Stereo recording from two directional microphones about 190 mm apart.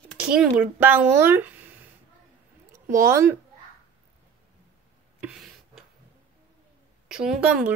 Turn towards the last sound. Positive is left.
turn(degrees=-5)  # may be behind; listen again after turning